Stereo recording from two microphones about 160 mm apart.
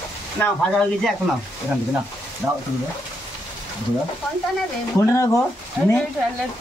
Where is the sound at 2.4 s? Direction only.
10° right (ahead or behind).